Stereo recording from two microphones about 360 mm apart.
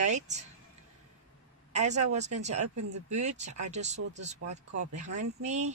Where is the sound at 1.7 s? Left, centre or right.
Centre.